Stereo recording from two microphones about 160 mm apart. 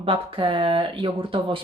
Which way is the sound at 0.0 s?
35° right (ahead or behind).